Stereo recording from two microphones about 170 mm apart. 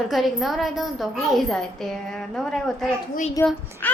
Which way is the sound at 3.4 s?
15° left (ahead or behind).